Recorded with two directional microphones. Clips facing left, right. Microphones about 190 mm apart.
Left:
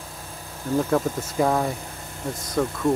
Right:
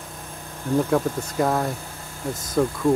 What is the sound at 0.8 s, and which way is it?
Speech, 5° left (ahead or behind).